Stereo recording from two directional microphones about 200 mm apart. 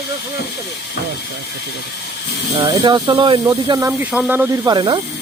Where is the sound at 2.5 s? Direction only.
20° right (ahead or behind).